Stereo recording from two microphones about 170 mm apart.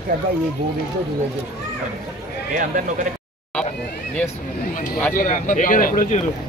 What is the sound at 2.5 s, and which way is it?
Speech, 50° right (ahead or behind).